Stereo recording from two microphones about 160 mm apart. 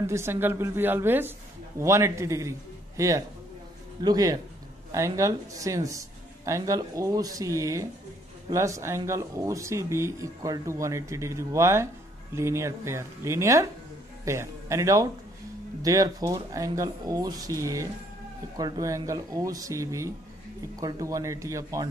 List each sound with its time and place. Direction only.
0.0 s a woman's voice: 15° right (ahead or behind)